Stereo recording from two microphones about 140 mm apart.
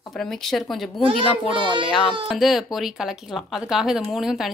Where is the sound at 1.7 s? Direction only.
35° right (ahead or behind).